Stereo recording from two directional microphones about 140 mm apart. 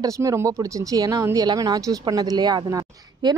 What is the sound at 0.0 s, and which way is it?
Speech, 20° right (ahead or behind).